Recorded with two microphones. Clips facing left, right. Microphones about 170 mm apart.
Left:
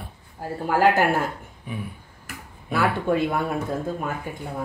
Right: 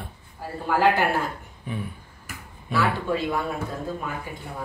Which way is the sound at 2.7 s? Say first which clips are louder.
Left 2 dB; 55° left (ahead or behind).